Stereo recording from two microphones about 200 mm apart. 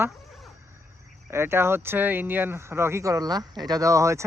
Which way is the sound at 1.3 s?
10° right (ahead or behind).